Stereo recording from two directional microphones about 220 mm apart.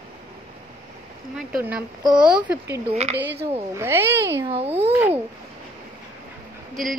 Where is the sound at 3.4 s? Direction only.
25° right (ahead or behind).